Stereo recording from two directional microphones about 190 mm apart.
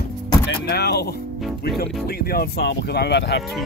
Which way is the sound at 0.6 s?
60° left (ahead or behind).